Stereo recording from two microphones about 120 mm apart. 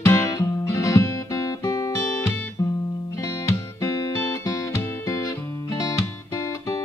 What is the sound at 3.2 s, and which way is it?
Music, 25° left (ahead or behind).